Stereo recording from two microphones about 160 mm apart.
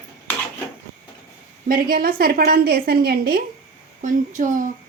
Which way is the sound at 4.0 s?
55° right (ahead or behind).